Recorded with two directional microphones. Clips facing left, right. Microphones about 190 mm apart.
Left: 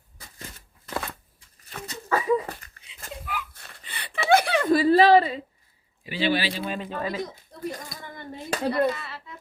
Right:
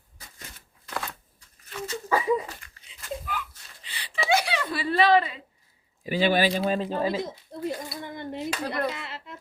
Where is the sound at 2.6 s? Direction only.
45° left (ahead or behind).